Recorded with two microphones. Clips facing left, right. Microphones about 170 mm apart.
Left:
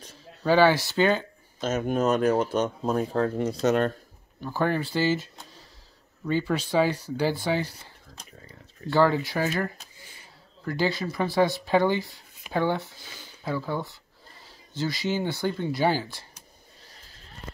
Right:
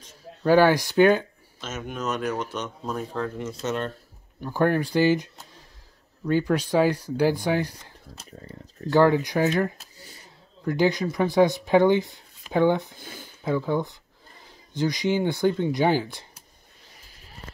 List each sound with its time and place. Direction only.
0.5 s speech: 15° right (ahead or behind)
1.6 s speech: 35° left (ahead or behind)
2.1 s speech: 50° left (ahead or behind)
3.0 s speech: 40° left (ahead or behind)
4.4 s speech: 15° right (ahead or behind)
8.9 s speech: 15° right (ahead or behind)
9.9 s a sound: 40° right (ahead or behind)
10.6 s speech: 15° right (ahead or behind)
12.9 s speech: 50° right (ahead or behind)
13.4 s speech: 20° right (ahead or behind)